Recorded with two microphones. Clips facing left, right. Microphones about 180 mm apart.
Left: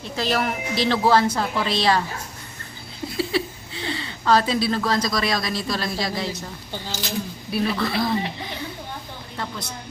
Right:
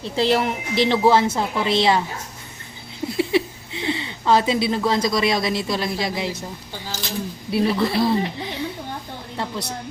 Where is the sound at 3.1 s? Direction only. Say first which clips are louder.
Right 4 dB; 20° right (ahead or behind).